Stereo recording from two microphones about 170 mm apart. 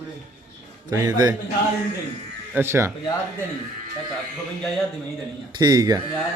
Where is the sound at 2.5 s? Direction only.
15° right (ahead or behind).